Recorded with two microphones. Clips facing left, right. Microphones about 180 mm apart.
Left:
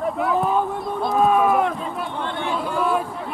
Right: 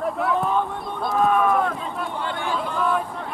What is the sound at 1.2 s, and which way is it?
Run, 20° left (ahead or behind).